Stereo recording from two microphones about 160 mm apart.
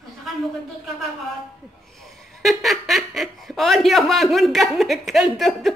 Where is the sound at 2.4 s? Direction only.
Centre (ahead or behind).